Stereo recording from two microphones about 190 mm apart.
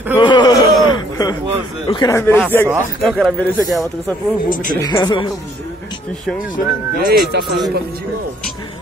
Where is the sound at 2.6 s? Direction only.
10° right (ahead or behind).